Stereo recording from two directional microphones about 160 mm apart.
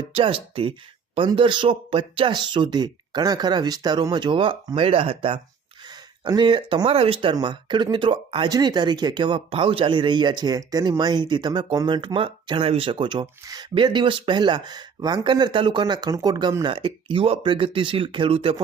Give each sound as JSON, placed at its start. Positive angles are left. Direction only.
{"t": 0.1, "sound": "speech", "side_deg": -35}